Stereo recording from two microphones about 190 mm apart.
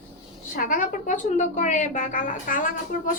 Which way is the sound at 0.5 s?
45° left (ahead or behind).